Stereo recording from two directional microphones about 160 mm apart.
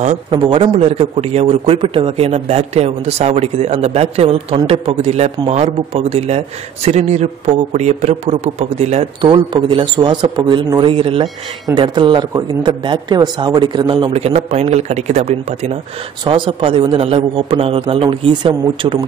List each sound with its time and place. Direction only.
0.3 s a man's voice: 35° right (ahead or behind)